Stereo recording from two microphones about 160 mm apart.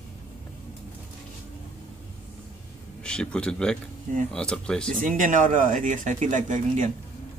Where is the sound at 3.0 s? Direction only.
5° left (ahead or behind).